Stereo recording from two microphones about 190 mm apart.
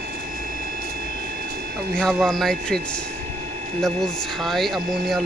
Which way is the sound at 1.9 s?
5° left (ahead or behind).